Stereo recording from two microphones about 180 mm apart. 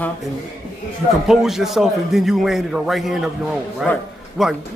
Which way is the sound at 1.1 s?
Centre (ahead or behind).